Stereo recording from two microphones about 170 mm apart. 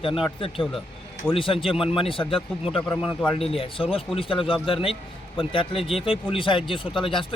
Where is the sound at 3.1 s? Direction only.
35° left (ahead or behind).